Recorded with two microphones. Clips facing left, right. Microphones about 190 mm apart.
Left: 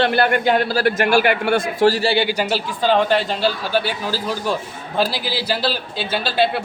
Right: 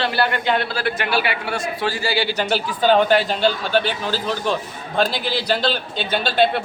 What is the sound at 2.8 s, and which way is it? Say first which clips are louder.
A man's voice: right 1 dB; centre (ahead or behind).